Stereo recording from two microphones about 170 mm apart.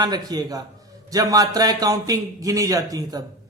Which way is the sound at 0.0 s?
25° right (ahead or behind).